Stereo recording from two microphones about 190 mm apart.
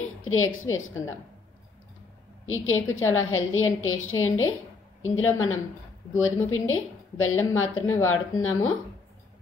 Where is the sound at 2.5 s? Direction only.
90° left.